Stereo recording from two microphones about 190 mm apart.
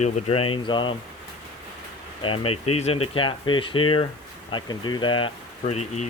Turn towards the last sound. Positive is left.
turn(degrees=35)  # may be behind; listen again after turning